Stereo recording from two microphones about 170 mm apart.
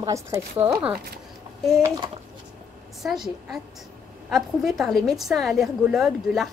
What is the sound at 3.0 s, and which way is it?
A woman's voice, centre (ahead or behind).